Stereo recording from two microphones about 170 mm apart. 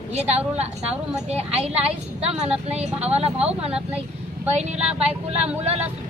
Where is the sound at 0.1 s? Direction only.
40° right (ahead or behind).